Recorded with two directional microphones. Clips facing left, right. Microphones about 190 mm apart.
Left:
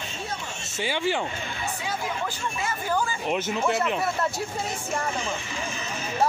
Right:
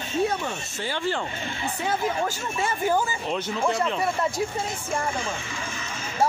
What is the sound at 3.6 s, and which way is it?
Speech, 5° left (ahead or behind).